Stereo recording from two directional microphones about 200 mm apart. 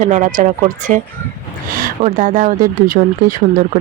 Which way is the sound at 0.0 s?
40° right (ahead or behind).